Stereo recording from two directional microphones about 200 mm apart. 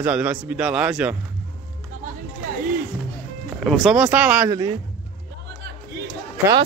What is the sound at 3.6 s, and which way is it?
Speech, centre (ahead or behind).